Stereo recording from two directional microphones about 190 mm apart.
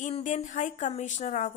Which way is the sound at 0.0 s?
40° left (ahead or behind).